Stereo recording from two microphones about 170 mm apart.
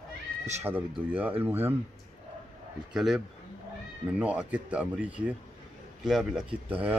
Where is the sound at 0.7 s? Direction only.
10° right (ahead or behind).